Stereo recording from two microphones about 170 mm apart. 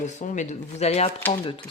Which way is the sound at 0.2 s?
40° left (ahead or behind).